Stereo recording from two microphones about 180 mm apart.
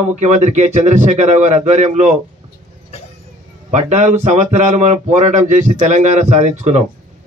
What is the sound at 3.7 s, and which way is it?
Speech, 40° right (ahead or behind).